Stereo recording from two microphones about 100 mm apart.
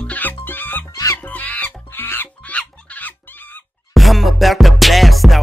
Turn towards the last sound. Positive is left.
turn(degrees=0)  # may be behind; listen again after turning